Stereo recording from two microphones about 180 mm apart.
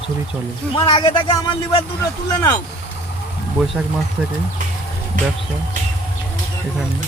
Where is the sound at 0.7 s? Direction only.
30° left (ahead or behind).